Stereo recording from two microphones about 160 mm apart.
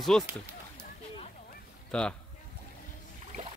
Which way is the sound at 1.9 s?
5° left (ahead or behind).